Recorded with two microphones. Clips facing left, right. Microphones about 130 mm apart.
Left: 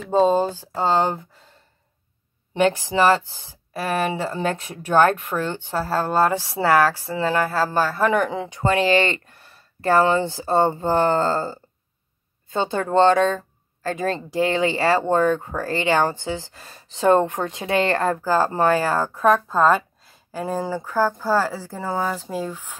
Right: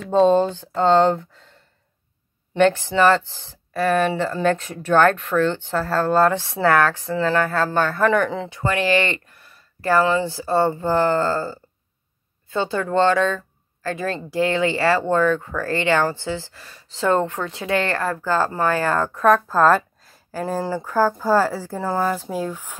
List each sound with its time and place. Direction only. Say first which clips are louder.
0.0 s speech: right 2 dB; 5° left (ahead or behind)
2.5 s speech: right 2 dB; 15° left (ahead or behind)
8.7 s speech: left 1 dB; 30° left (ahead or behind)
18.0 s speech: left 3 dB; 30° left (ahead or behind)
18.5 s speech: left 2 dB; 20° left (ahead or behind)
19.2 s speech: right 2 dB; centre (ahead or behind)
21.7 s speech: right 3 dB; 5° left (ahead or behind)
22.1 s speech: right 2 dB; 10° right (ahead or behind)